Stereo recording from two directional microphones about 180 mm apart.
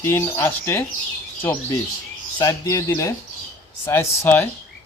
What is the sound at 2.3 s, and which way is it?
Speech, 20° left (ahead or behind).